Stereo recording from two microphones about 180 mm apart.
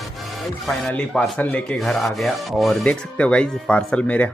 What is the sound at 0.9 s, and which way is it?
Speech, 5° left (ahead or behind).